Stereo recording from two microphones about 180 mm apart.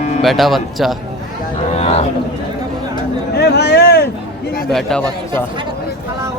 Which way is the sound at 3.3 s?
65° left (ahead or behind).